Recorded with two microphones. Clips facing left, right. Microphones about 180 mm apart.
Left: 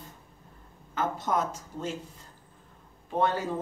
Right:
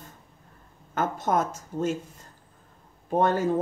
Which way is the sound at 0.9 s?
50° right (ahead or behind).